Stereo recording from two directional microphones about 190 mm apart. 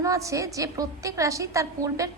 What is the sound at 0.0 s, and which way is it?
A woman's voice, 15° right (ahead or behind).